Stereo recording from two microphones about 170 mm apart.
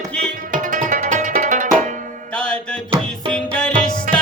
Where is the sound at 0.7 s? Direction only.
50° right (ahead or behind).